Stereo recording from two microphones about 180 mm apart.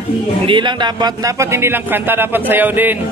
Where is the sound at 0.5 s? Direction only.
25° right (ahead or behind); by 3.0 s 10° right (ahead or behind).